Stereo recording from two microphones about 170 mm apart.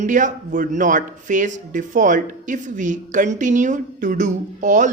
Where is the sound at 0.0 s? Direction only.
50° right (ahead or behind).